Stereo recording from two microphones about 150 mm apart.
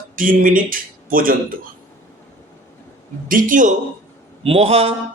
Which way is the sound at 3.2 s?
65° right (ahead or behind).